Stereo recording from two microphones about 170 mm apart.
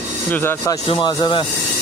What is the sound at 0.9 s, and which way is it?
Speech, 30° left (ahead or behind).